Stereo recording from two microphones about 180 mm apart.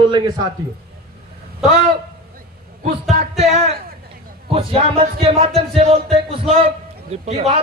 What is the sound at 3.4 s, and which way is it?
Speech, 35° right (ahead or behind).